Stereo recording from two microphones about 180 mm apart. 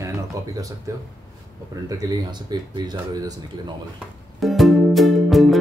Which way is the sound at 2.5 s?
25° right (ahead or behind).